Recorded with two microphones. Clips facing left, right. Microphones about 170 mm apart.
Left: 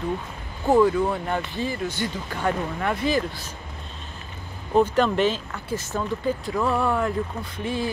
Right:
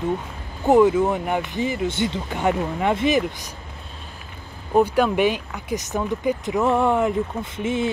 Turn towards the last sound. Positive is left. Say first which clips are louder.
# right 4 dB
turn(degrees=-20)  # may be behind; listen again after turning